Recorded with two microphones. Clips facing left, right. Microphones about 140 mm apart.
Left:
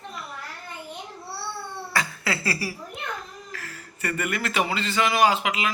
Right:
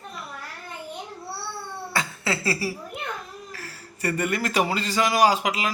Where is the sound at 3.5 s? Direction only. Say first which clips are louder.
Even; 35° right (ahead or behind).